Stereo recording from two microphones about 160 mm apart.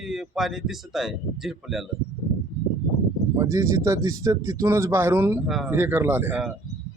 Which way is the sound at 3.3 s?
20° right (ahead or behind).